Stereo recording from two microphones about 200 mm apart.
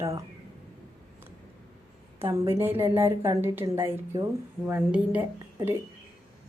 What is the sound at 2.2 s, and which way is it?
A woman's voice, 15° right (ahead or behind).